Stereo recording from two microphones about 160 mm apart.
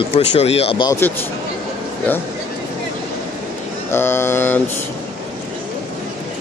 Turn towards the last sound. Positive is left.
turn(degrees=15)  # may be behind; listen again after turning